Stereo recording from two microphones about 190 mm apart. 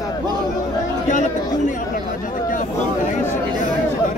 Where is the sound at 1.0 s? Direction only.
40° left (ahead or behind).